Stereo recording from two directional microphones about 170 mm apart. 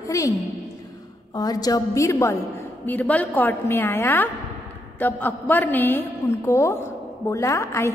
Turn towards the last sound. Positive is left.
turn(degrees=15)  # may be behind; listen again after turning